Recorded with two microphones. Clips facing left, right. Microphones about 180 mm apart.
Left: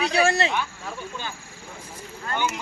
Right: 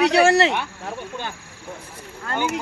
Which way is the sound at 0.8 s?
55° right (ahead or behind).